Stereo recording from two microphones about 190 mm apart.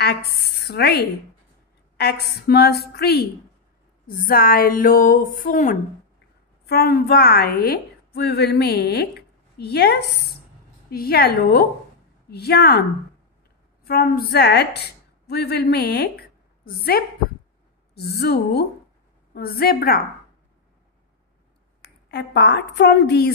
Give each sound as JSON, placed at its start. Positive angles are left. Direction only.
{"t": 0.0, "sound": "a woman's voice", "side_deg": 60}
{"t": 6.6, "sound": "a woman's voice", "side_deg": 55}
{"t": 13.8, "sound": "a woman's voice", "side_deg": 55}
{"t": 22.1, "sound": "a woman's voice", "side_deg": 60}